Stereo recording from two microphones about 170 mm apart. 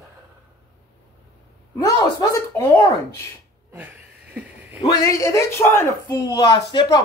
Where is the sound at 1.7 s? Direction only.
20° left (ahead or behind).